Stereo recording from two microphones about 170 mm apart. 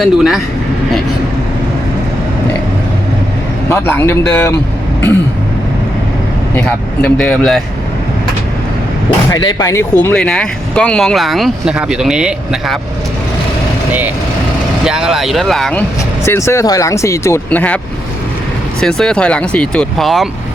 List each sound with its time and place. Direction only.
0.0 s speech: centre (ahead or behind)
3.7 s speech: 15° left (ahead or behind)
6.6 s speech: 5° left (ahead or behind)
9.3 s speech: 25° left (ahead or behind); by 12.8 s centre (ahead or behind)
14.8 s speech: 5° right (ahead or behind)
16.2 s speech: 15° left (ahead or behind)
18.8 s speech: 5° left (ahead or behind)